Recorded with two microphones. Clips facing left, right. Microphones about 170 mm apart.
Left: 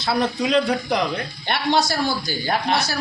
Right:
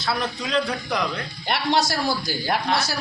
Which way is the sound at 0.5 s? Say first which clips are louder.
Left 3 dB; 30° left (ahead or behind).